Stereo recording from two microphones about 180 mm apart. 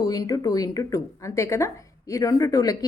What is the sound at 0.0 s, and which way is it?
Speech, 20° left (ahead or behind).